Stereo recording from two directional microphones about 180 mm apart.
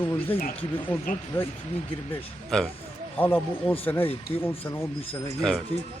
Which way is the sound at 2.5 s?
5° left (ahead or behind).